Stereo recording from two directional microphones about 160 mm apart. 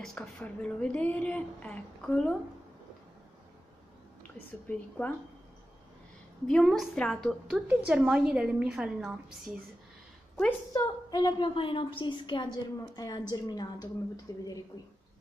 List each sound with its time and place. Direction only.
0.0 s a woman's voice: 5° left (ahead or behind)
4.6 s a woman's voice: 10° left (ahead or behind)
6.4 s a woman's voice: 5° left (ahead or behind)
7.5 s a woman's voice: 10° right (ahead or behind)
10.7 s a woman's voice: 25° left (ahead or behind)